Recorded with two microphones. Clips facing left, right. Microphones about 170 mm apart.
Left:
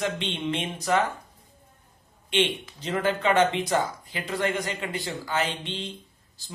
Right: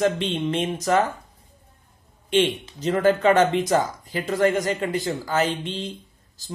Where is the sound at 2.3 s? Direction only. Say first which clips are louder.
Right 5 dB; 40° right (ahead or behind).